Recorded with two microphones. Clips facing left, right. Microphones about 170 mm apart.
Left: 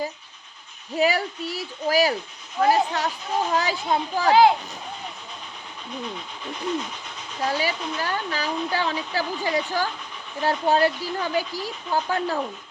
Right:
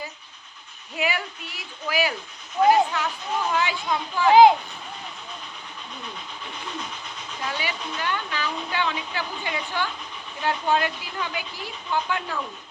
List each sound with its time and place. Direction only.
0.9 s a woman's voice: 40° left (ahead or behind)
4.3 s a child's voice: 20° right (ahead or behind)
7.4 s a woman's voice: 40° left (ahead or behind)